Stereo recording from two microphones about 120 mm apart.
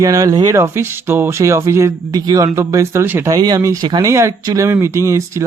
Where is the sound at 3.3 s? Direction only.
35° right (ahead or behind).